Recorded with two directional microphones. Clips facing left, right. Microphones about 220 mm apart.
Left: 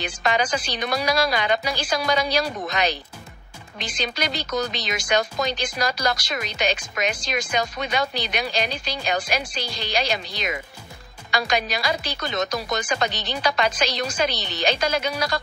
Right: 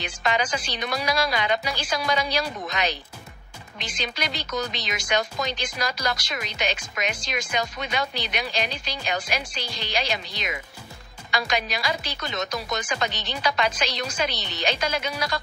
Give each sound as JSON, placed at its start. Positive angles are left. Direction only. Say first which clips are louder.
{"t": 0.0, "sound": "speech", "louder": "left 2 dB", "side_deg": 40}